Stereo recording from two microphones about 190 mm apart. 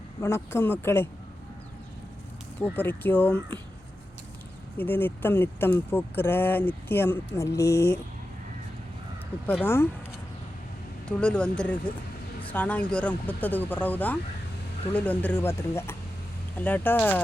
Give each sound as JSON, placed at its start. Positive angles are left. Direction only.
{"t": 0.2, "sound": "speech", "side_deg": 15}
{"t": 2.7, "sound": "speech", "side_deg": 10}
{"t": 4.8, "sound": "speech", "side_deg": 10}
{"t": 7.7, "sound": "speech", "side_deg": 55}
{"t": 9.6, "sound": "speech", "side_deg": 10}
{"t": 11.2, "sound": "speech", "side_deg": 5}